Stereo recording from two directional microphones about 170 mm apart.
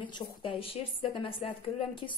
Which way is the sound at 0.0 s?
30° left (ahead or behind).